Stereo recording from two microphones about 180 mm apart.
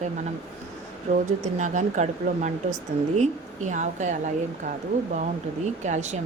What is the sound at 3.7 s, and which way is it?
Speech, 40° right (ahead or behind).